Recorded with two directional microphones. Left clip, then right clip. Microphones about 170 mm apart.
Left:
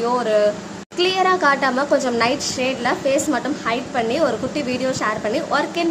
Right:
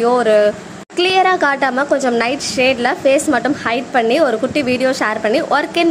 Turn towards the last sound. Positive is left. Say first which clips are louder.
# right 5 dB
turn(degrees=-30)  # may be behind; listen again after turning